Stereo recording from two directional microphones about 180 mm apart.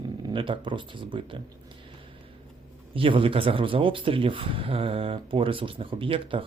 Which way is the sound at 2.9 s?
30° right (ahead or behind).